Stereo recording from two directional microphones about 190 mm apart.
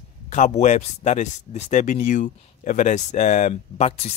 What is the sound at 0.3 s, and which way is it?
Speech, 40° left (ahead or behind).